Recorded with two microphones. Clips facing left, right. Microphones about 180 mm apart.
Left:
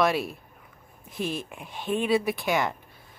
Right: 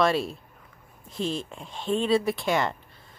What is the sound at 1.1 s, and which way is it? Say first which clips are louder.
Speech: right 1 dB; 25° right (ahead or behind).